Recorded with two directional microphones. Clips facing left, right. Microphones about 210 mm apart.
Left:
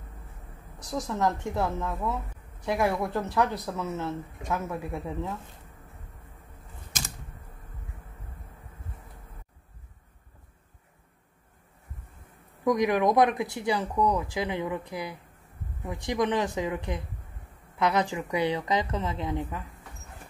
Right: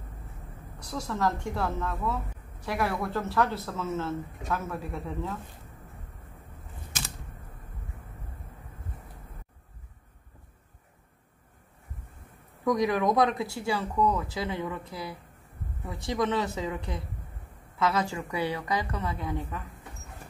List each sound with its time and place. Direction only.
0.7 s a woman's voice: 20° left (ahead or behind)
12.6 s a woman's voice: 15° left (ahead or behind)